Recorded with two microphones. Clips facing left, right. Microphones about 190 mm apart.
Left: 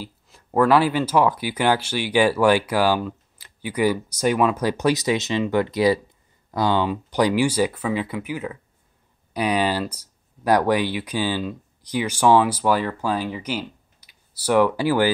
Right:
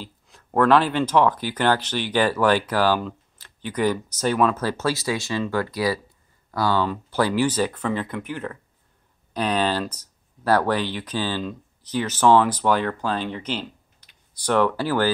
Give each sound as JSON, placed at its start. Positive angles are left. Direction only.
{"t": 0.0, "sound": "speech", "side_deg": 5}